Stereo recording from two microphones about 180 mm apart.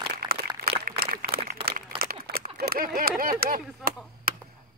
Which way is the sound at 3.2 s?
50° right (ahead or behind).